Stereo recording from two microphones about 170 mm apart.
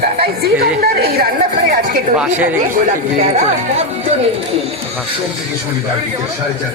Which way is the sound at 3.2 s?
40° right (ahead or behind).